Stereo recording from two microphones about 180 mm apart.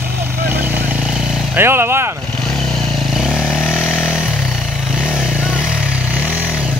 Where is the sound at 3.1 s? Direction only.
Centre (ahead or behind).